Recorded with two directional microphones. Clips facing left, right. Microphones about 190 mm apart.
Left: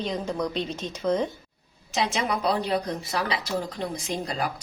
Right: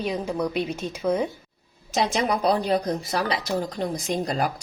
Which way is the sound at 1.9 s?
40° right (ahead or behind).